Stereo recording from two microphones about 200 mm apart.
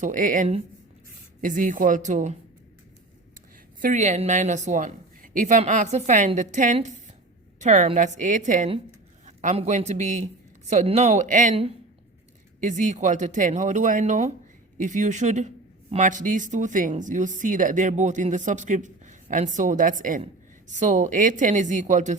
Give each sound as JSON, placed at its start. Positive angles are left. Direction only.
{"t": 0.0, "sound": "speech", "side_deg": -40}
{"t": 3.8, "sound": "speech", "side_deg": -40}